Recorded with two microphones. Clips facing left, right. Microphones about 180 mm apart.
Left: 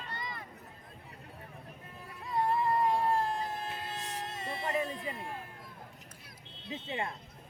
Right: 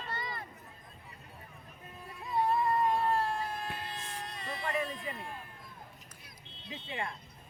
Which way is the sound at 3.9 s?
40° left (ahead or behind).